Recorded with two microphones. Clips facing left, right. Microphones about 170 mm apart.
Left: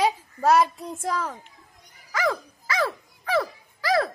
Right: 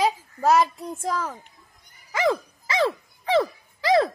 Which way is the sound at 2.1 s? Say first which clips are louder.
Right 3 dB; 25° right (ahead or behind).